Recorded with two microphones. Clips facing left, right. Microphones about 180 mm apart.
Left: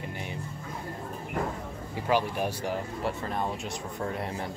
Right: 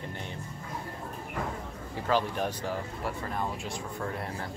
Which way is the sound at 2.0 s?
10° left (ahead or behind).